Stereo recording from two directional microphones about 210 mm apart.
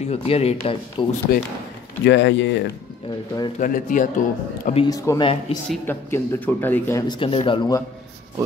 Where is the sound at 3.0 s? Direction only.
20° left (ahead or behind).